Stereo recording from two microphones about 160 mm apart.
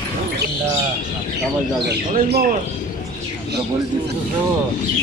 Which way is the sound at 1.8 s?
90° right.